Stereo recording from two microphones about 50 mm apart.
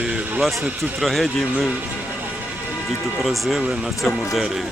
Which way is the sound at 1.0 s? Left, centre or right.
Centre.